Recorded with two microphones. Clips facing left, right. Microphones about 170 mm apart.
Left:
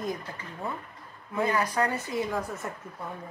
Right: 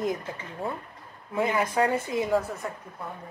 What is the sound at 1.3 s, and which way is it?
Speech, 20° right (ahead or behind).